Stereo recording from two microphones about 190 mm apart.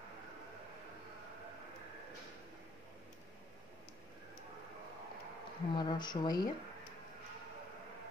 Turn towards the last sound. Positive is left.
turn(degrees=20)  # may be behind; listen again after turning